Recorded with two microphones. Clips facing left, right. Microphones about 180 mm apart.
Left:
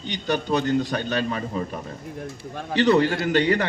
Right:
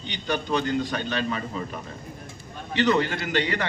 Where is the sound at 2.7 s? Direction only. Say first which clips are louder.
Left 4 dB; 40° left (ahead or behind).